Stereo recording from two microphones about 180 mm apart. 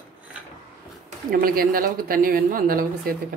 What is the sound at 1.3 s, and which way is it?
A woman's voice, 55° right (ahead or behind).